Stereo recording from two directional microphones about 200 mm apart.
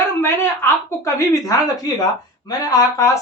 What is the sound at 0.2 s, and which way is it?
Speech, 10° left (ahead or behind).